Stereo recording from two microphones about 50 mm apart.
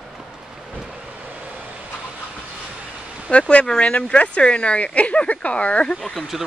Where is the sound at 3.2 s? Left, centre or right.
Left.